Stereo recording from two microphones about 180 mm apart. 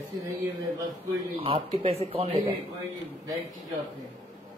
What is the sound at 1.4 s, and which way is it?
Speech, 30° right (ahead or behind).